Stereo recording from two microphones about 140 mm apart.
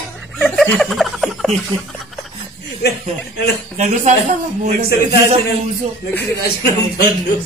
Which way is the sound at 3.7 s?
60° right (ahead or behind).